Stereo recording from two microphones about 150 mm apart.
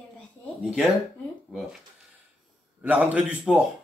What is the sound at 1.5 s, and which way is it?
Speech, 5° right (ahead or behind).